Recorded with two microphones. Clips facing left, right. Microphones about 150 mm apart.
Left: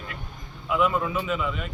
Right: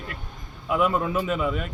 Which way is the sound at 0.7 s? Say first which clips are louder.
Right 1 dB; 45° right (ahead or behind).